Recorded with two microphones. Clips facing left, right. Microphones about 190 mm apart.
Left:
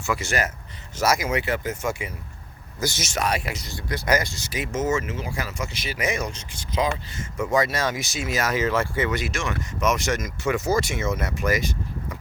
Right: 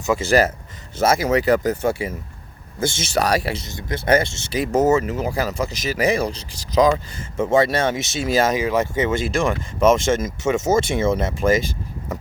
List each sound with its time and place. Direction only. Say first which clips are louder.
0.0 s speech: right 6 dB; 20° right (ahead or behind)
0.3 s speech: right 10 dB; 35° right (ahead or behind)
8.5 s speech: right 3 dB; 15° right (ahead or behind)